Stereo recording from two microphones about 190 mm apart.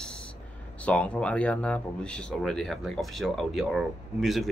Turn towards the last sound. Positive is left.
turn(degrees=0)  # may be behind; listen again after turning